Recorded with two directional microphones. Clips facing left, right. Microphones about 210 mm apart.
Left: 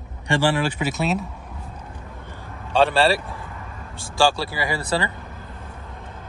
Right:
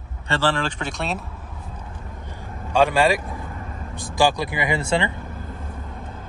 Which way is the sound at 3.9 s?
15° right (ahead or behind).